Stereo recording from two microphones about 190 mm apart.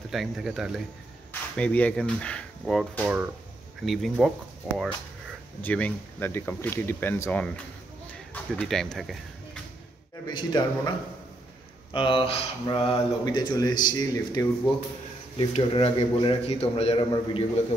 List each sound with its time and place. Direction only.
0.1 s speech: centre (ahead or behind)
5.6 s speech: 10° left (ahead or behind)
8.1 s a sound: 10° left (ahead or behind)
10.2 s speech: 20° left (ahead or behind)
11.9 s speech: 25° left (ahead or behind)
15.3 s a man's voice: 30° left (ahead or behind)